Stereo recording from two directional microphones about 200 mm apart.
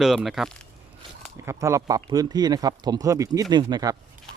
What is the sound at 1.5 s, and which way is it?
Speech, 15° right (ahead or behind).